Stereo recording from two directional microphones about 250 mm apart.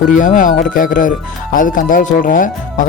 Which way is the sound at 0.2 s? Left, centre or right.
Left.